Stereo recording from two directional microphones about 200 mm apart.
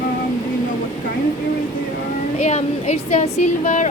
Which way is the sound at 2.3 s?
35° left (ahead or behind).